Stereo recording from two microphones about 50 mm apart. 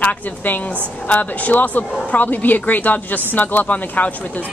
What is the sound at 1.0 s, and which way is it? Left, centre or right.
A woman's voice, left.